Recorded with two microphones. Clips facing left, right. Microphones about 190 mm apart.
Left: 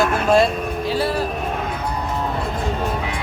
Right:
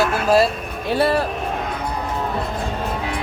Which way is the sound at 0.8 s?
60° right (ahead or behind).